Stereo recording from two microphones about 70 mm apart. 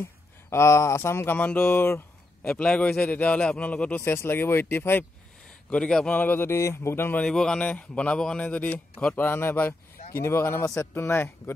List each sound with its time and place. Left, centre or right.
0.5 s speech: left
2.5 s a man's voice: centre
4.0 s speech: left
5.7 s a man's voice: centre
6.1 s speech: left
6.6 s speech: left
7.2 s a man's voice: centre
7.6 s speech: centre; by 11.1 s left
11.1 s speech: left